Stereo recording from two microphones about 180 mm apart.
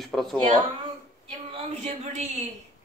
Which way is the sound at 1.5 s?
35° right (ahead or behind).